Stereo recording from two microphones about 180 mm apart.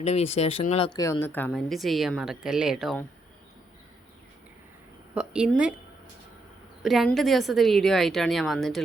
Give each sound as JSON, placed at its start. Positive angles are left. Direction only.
{"t": 0.0, "sound": "speech", "side_deg": 35}
{"t": 0.9, "sound": "a woman's voice", "side_deg": 20}
{"t": 5.1, "sound": "a woman's voice", "side_deg": -5}
{"t": 6.8, "sound": "a woman's voice", "side_deg": 0}